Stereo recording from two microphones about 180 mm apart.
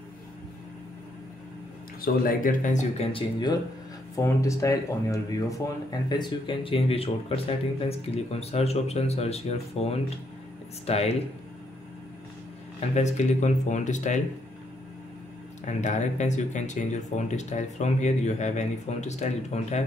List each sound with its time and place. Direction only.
2.0 s speech: 50° left (ahead or behind); by 11.1 s 35° left (ahead or behind)
12.9 s speech: 40° left (ahead or behind)
15.6 s speech: 40° left (ahead or behind)